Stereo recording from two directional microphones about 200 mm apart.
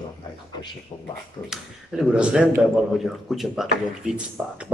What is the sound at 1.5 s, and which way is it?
Speech, 5° right (ahead or behind).